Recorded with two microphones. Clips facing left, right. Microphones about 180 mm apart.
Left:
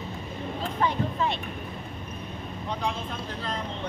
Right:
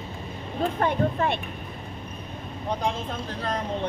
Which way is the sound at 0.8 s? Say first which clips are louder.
Right 2 dB; 55° right (ahead or behind).